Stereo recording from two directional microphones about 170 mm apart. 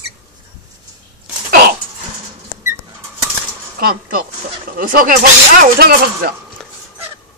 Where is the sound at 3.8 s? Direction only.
60° right (ahead or behind).